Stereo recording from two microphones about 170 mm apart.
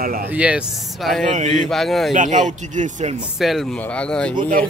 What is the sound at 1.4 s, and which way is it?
Speech, 45° right (ahead or behind).